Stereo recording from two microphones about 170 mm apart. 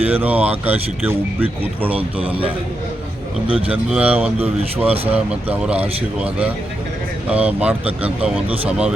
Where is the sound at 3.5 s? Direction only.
35° right (ahead or behind).